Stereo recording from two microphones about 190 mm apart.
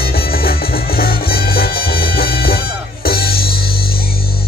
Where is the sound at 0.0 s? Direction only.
55° left (ahead or behind).